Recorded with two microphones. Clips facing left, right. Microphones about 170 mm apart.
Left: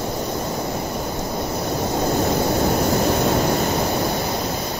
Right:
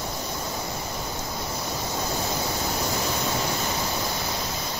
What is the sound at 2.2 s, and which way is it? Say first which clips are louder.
Vehicle: left 9 dB; 55° left (ahead or behind).